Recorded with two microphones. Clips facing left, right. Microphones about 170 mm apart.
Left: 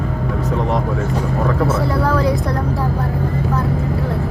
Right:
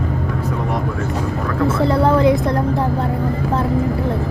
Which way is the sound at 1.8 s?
25° right (ahead or behind).